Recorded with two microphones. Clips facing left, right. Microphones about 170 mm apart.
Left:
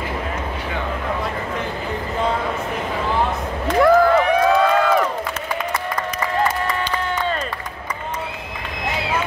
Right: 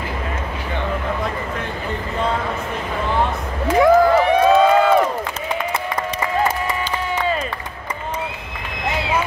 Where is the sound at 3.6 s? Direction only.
5° right (ahead or behind).